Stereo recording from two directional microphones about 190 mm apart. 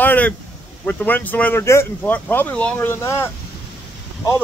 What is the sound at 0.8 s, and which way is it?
Speech, 10° left (ahead or behind).